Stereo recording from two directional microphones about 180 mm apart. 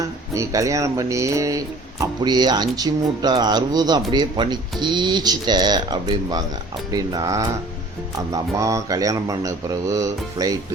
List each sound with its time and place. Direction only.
0.3 s speech: 15° right (ahead or behind)